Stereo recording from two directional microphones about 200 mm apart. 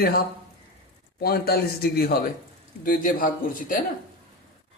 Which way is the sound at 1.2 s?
50° left (ahead or behind).